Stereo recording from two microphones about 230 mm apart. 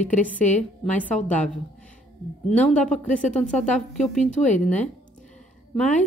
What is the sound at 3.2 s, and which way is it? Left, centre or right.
Speech, left.